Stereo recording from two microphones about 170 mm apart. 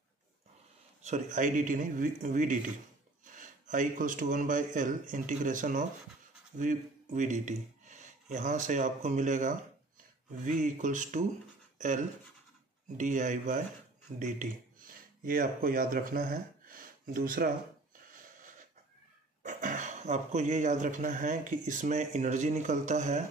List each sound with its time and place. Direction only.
1.0 s speech: 45° right (ahead or behind)
19.4 s speech: 50° right (ahead or behind)